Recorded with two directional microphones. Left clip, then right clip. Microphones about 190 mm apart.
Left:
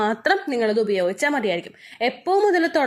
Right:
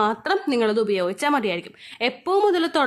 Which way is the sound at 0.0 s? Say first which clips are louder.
Left 1 dB; centre (ahead or behind).